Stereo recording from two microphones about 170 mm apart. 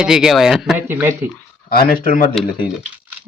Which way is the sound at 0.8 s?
15° right (ahead or behind).